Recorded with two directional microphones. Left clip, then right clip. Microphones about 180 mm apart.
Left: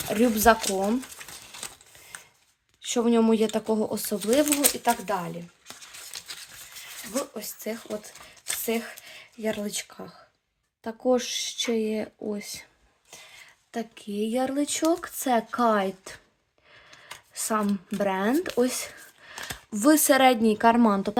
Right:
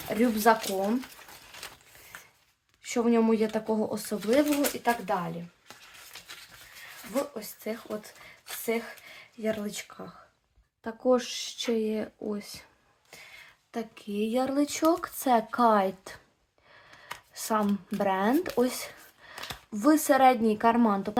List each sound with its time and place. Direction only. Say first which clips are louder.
0.0 s speech: left 4 dB; 25° left (ahead or behind)
2.8 s speech: left 3 dB; 20° left (ahead or behind)
4.4 s speech: left 2 dB; 55° left (ahead or behind)
4.8 s speech: left 2 dB; 25° left (ahead or behind)
5.6 s a sound: left 5 dB; 60° left (ahead or behind)
7.1 s speech: even; 25° left (ahead or behind)
10.8 s speech: left 1 dB; 15° left (ahead or behind)
13.7 s speech: left 2 dB; 20° left (ahead or behind)
17.3 s speech: left 1 dB; 20° left (ahead or behind)
18.5 s a sound: left 2 dB; 20° left (ahead or behind)
19.7 s speech: left 3 dB; 30° left (ahead or behind)